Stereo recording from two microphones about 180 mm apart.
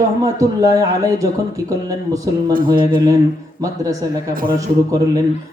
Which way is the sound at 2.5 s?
50° right (ahead or behind).